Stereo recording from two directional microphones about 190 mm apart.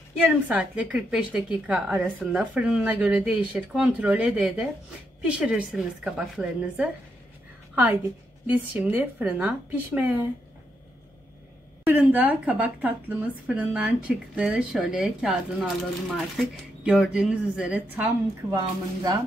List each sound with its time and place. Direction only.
0.2 s a woman's voice: 5° right (ahead or behind)
11.8 s speech: 10° right (ahead or behind)
16.8 s a woman's voice: 5° right (ahead or behind)
18.5 s speech: 20° right (ahead or behind)